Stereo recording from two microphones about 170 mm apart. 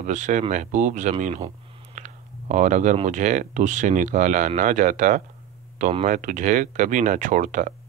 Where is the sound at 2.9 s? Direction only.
45° right (ahead or behind).